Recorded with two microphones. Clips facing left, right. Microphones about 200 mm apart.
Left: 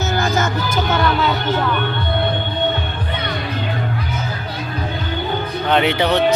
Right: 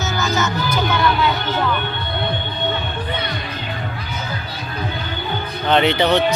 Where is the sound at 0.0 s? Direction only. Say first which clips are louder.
Left 2 dB; 55° left (ahead or behind).